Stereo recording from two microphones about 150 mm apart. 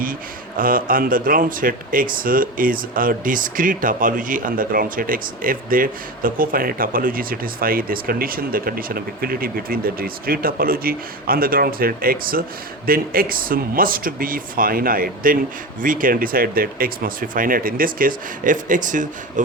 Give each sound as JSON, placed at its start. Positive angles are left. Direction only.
{"t": 0.0, "sound": "speech", "side_deg": -70}